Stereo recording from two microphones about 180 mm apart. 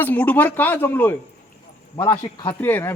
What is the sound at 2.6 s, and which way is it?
Speech, 10° left (ahead or behind).